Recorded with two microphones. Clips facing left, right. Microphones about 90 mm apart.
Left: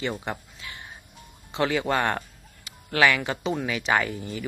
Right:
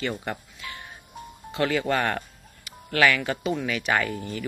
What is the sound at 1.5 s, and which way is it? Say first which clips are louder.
Speech: even; 20° left (ahead or behind).